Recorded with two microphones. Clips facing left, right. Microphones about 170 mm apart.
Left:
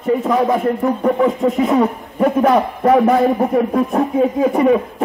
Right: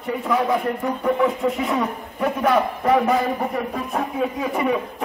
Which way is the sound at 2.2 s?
45° left (ahead or behind).